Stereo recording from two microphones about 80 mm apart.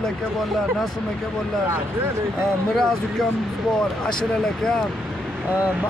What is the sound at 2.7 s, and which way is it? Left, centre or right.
Speech, centre.